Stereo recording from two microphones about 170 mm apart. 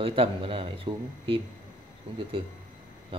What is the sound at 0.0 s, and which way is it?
Speech, 30° right (ahead or behind).